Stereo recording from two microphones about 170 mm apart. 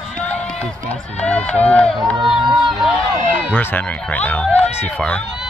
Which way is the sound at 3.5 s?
10° left (ahead or behind).